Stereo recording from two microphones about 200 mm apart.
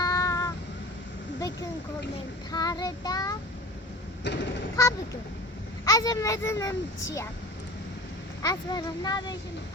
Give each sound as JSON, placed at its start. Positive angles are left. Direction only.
{"t": 0.0, "sound": "child singing", "side_deg": 15}
{"t": 2.5, "sound": "speech", "side_deg": 20}
{"t": 4.3, "sound": "mechanisms", "side_deg": 60}
{"t": 5.8, "sound": "a child's voice", "side_deg": 15}
{"t": 8.4, "sound": "speech", "side_deg": 20}